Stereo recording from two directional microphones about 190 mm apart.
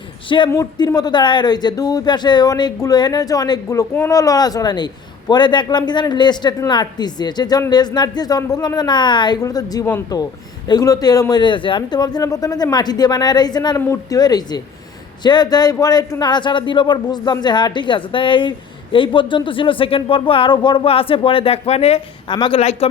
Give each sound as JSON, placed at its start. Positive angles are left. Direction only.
{"t": 0.3, "sound": "a woman's voice", "side_deg": 25}